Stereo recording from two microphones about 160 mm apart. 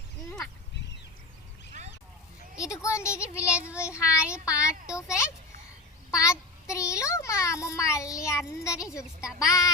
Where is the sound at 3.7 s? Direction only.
5° right (ahead or behind).